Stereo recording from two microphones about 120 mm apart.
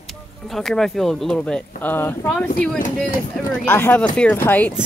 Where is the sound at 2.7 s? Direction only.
90° left.